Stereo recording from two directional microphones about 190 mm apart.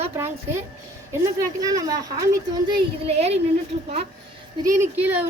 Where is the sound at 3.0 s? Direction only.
35° right (ahead or behind).